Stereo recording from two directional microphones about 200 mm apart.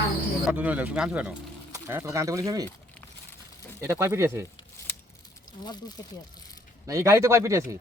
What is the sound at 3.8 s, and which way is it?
Speech, 15° right (ahead or behind).